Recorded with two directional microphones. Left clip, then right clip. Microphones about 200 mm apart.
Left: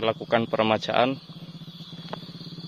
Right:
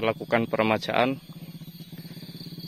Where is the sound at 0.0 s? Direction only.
10° right (ahead or behind).